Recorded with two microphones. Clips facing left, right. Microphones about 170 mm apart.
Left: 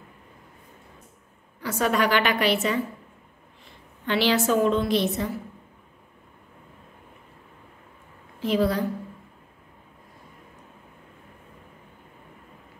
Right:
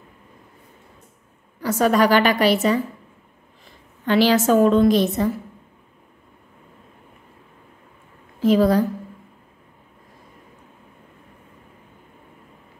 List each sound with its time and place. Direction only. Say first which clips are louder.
1.6 s a woman's voice: right 6 dB; 40° right (ahead or behind)
4.0 s a woman's voice: right 6 dB; 45° right (ahead or behind)
8.4 s a woman's voice: right 7 dB; 45° right (ahead or behind)